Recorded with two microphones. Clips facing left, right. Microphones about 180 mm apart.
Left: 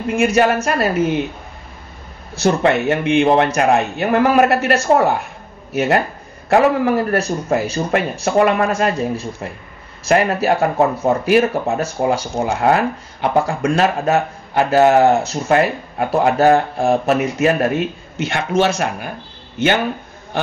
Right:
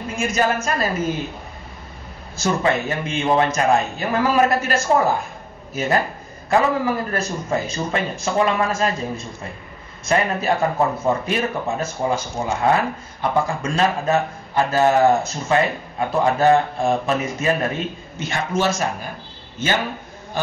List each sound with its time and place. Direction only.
0.1 s a man's voice: 65° left (ahead or behind)
2.3 s a man's voice: 65° left (ahead or behind)